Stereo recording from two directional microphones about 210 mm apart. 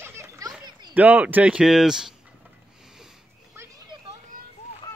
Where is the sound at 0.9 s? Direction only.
10° right (ahead or behind).